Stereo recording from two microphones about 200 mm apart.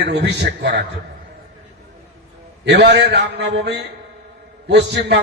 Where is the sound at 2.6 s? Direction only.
60° right (ahead or behind).